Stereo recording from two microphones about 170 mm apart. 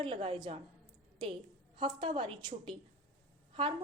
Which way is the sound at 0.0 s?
30° right (ahead or behind).